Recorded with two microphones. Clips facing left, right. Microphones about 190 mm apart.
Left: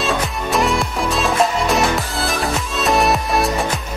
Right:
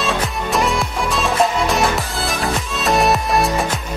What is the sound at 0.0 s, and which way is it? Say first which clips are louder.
Music: even; centre (ahead or behind).